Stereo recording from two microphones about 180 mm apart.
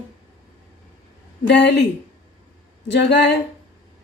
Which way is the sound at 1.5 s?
70° left (ahead or behind).